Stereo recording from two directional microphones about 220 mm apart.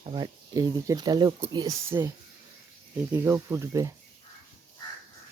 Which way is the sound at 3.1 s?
10° right (ahead or behind).